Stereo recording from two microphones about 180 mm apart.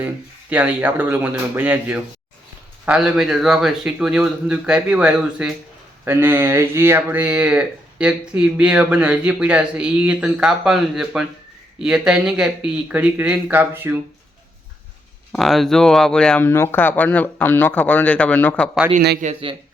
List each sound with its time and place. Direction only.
0.5 s speech: 10° right (ahead or behind)
15.3 s speech: centre (ahead or behind)
19.2 s a man's voice: 35° right (ahead or behind)